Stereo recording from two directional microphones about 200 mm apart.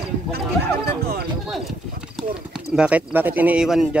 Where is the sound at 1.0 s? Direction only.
50° right (ahead or behind).